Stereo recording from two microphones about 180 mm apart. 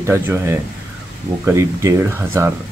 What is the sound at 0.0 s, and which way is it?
Speech, 15° right (ahead or behind).